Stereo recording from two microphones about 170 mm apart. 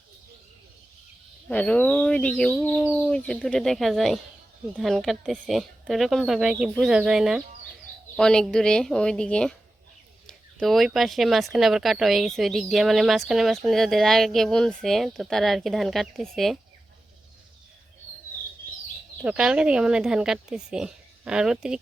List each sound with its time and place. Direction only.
1.5 s speech: 10° left (ahead or behind)
19.2 s speech: 5° right (ahead or behind)